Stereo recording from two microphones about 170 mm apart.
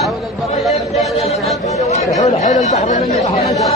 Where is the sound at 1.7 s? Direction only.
40° left (ahead or behind).